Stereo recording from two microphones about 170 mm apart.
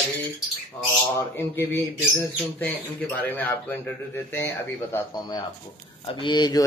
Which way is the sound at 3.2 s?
10° left (ahead or behind).